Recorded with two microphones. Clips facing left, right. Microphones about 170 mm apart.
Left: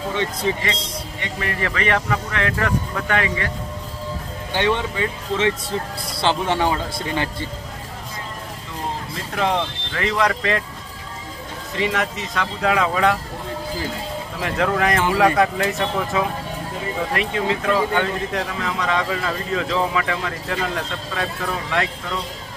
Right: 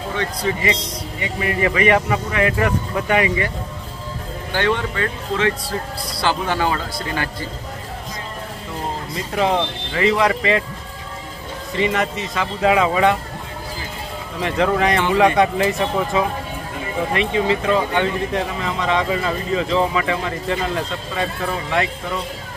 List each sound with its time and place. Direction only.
0.1 s speech: 20° left (ahead or behind)
1.2 s speech: 10° right (ahead or behind)
4.5 s speech: 20° left (ahead or behind)
9.3 s speech: 5° right (ahead or behind)
11.7 s speech: centre (ahead or behind)
14.4 s speech: centre (ahead or behind)